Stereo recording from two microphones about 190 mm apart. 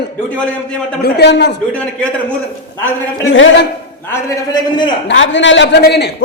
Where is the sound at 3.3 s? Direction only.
80° left.